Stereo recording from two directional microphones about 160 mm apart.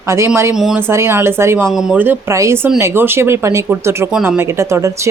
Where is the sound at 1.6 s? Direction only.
5° right (ahead or behind).